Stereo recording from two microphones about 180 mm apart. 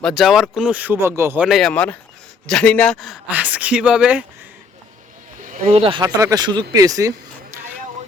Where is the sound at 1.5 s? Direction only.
Centre (ahead or behind).